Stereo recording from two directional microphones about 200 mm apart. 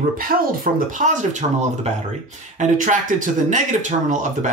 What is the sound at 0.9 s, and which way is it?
Speech, 40° right (ahead or behind).